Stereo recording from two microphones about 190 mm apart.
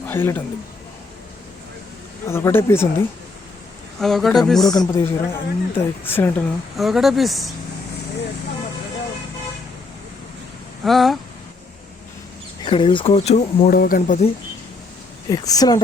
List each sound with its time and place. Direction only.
0.0 s speech: 10° left (ahead or behind)
2.2 s a woman's voice: 15° left (ahead or behind)
4.0 s speech: centre (ahead or behind)
4.7 s a woman's voice: 15° left (ahead or behind)
6.7 s speech: centre (ahead or behind)
10.8 s speech: centre (ahead or behind)
12.6 s speech: 25° left (ahead or behind)
13.7 s speech: 50° left (ahead or behind)
15.3 s speech: 20° left (ahead or behind)